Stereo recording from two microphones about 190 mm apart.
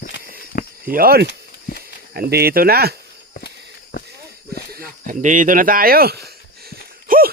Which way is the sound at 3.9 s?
55° left (ahead or behind).